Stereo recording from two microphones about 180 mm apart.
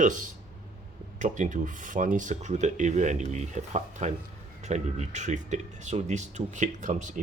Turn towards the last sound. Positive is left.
turn(degrees=-45)  # may be behind; listen again after turning